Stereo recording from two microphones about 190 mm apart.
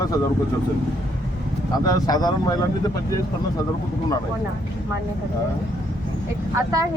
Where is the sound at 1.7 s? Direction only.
20° left (ahead or behind).